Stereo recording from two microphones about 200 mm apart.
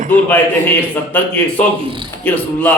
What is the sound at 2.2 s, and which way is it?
Speech, 10° left (ahead or behind).